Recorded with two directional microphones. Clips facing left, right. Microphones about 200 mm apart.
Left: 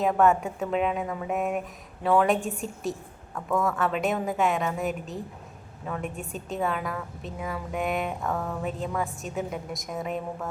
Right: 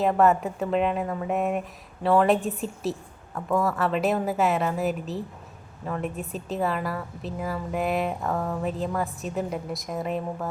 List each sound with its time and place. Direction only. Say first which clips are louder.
0.0 s speech: right 1 dB; centre (ahead or behind)